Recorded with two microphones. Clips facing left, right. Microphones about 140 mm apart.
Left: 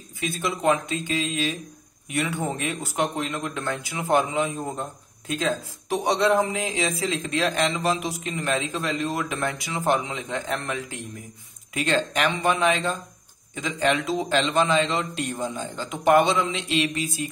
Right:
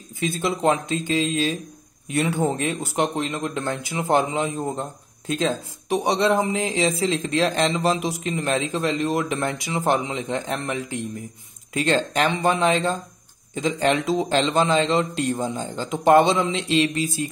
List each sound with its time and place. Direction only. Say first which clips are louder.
0.2 s speech: right 3 dB; 30° right (ahead or behind)